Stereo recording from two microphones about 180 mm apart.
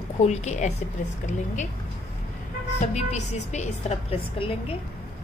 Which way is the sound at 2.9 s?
40° left (ahead or behind).